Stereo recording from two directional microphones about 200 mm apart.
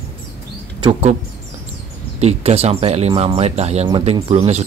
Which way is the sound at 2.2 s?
30° right (ahead or behind).